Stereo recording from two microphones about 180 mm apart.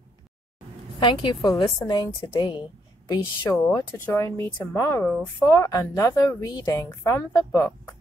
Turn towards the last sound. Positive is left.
turn(degrees=15)  # may be behind; listen again after turning